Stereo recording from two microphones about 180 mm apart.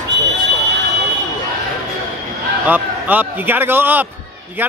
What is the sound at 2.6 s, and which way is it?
A man's voice, 10° right (ahead or behind).